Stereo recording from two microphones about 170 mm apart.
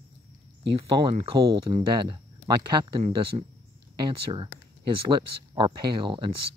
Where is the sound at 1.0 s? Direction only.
30° right (ahead or behind).